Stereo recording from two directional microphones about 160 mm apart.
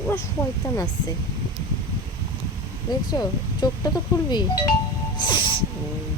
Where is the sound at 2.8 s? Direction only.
25° left (ahead or behind).